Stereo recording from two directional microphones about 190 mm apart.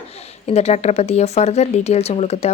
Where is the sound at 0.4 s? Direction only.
35° left (ahead or behind).